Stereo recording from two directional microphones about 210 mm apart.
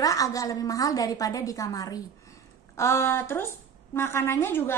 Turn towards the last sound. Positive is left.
turn(degrees=10)  # may be behind; listen again after turning